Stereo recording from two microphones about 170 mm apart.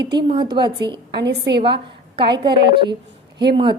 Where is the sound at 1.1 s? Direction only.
75° right (ahead or behind).